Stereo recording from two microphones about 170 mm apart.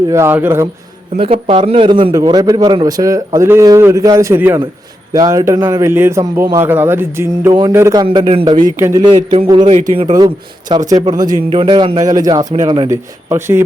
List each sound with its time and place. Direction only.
0.1 s speech: 15° right (ahead or behind)
1.1 s a man's voice: 35° right (ahead or behind); by 8.0 s 15° right (ahead or behind)
8.0 s a man's voice: 30° right (ahead or behind)
8.7 s speech: 15° right (ahead or behind)
9.0 s a man's voice: 30° right (ahead or behind); by 13.6 s 15° right (ahead or behind)